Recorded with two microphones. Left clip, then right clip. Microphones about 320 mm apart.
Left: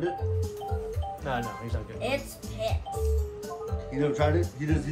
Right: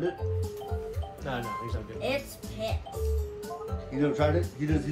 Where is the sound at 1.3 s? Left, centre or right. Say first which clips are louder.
Even; left.